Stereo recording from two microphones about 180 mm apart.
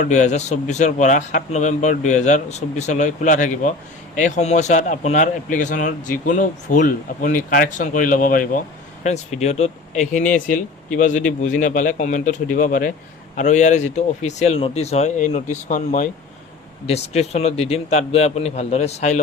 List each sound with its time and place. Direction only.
0.1 s a man's voice: 40° left (ahead or behind)
9.0 s a man's voice: 40° left (ahead or behind)